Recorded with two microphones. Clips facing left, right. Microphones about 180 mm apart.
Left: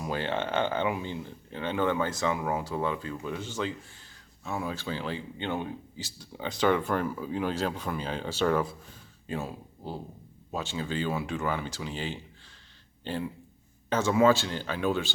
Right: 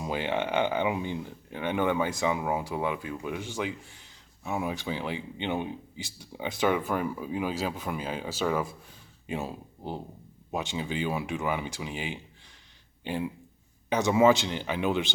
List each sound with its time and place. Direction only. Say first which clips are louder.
0.0 s speech: right 1 dB; 15° right (ahead or behind)
9.2 s speech: right 1 dB; 20° right (ahead or behind)